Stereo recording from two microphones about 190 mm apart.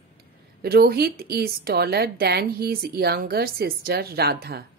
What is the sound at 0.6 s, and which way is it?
A woman's voice, 55° right (ahead or behind).